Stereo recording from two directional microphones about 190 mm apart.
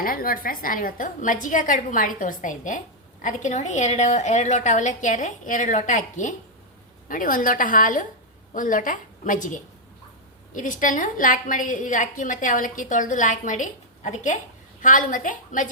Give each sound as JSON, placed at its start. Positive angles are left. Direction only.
{"t": 0.0, "sound": "a woman's voice", "side_deg": 50}